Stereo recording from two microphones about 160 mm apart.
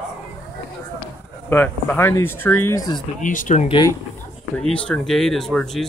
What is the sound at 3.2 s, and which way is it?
Speech, 55° left (ahead or behind).